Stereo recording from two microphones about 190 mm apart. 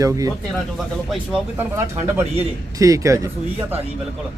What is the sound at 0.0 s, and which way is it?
Speech, 15° right (ahead or behind).